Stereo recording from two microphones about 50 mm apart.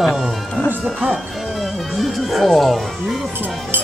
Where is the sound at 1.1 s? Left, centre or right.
Centre.